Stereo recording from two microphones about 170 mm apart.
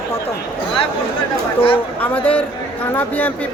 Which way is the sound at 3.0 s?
10° left (ahead or behind).